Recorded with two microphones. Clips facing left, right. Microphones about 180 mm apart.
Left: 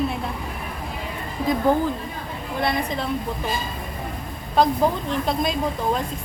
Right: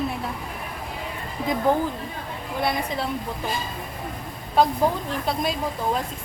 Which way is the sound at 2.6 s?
10° right (ahead or behind).